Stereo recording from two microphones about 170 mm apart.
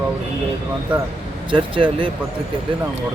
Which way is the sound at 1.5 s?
30° right (ahead or behind).